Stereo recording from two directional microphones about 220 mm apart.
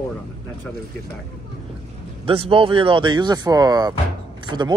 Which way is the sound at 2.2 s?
25° right (ahead or behind).